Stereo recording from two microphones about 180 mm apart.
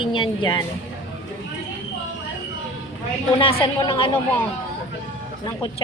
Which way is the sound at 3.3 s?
30° left (ahead or behind).